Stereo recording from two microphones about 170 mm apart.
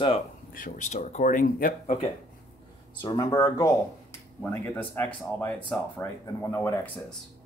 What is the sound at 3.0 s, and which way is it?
Speech, 25° left (ahead or behind).